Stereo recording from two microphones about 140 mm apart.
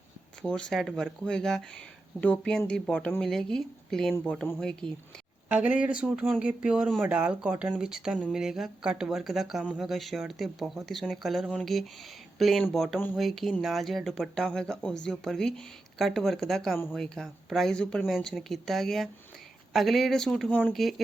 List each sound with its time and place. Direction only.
0.4 s speech: 5° left (ahead or behind)
5.5 s speech: 10° right (ahead or behind)